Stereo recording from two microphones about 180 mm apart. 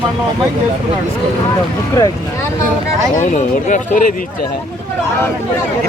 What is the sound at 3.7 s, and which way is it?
Speech, 45° left (ahead or behind).